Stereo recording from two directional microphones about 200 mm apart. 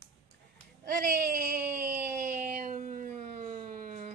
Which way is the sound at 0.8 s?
45° right (ahead or behind).